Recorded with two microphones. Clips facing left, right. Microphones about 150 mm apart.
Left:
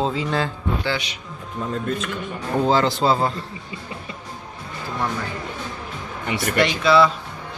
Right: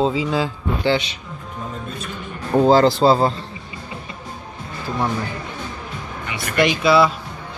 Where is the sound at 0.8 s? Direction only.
25° right (ahead or behind).